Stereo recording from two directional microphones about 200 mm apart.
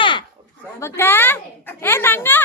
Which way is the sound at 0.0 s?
25° left (ahead or behind).